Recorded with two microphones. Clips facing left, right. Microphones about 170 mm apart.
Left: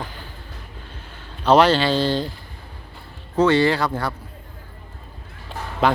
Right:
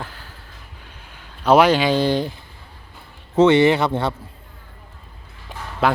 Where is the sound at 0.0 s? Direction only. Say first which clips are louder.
Left 1 dB; centre (ahead or behind).